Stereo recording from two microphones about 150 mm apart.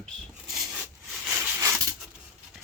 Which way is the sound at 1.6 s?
20° right (ahead or behind).